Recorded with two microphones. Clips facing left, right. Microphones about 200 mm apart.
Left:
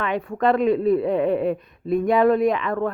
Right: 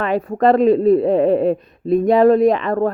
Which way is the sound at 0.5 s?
30° right (ahead or behind).